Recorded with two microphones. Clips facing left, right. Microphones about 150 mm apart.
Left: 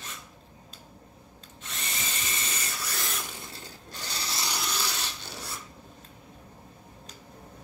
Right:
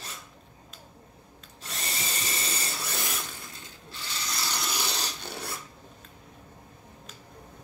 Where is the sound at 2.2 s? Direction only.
35° right (ahead or behind).